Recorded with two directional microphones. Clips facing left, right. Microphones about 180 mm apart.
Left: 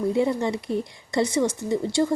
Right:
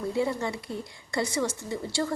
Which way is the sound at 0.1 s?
20° left (ahead or behind).